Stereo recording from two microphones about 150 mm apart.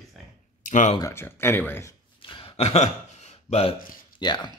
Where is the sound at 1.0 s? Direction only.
15° left (ahead or behind).